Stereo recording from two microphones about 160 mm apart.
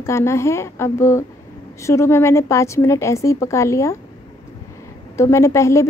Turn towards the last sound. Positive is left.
turn(degrees=20)  # may be behind; listen again after turning